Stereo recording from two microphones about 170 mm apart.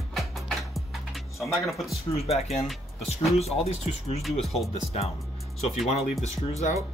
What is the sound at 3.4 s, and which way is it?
Cutlery, 35° left (ahead or behind).